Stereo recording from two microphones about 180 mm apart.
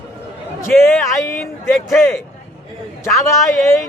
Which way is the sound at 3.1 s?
15° left (ahead or behind).